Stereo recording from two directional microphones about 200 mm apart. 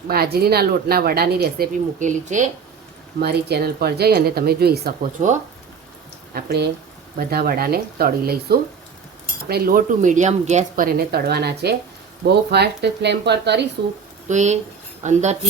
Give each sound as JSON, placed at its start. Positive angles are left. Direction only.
{"t": 0.1, "sound": "speech", "side_deg": -50}
{"t": 3.2, "sound": "speech", "side_deg": -55}
{"t": 6.3, "sound": "speech", "side_deg": -55}
{"t": 10.9, "sound": "speech", "side_deg": -55}
{"t": 14.3, "sound": "speech", "side_deg": -35}